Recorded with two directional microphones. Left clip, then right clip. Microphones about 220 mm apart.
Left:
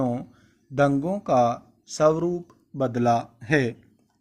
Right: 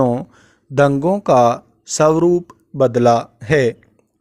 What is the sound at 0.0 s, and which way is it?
Speech, 45° right (ahead or behind).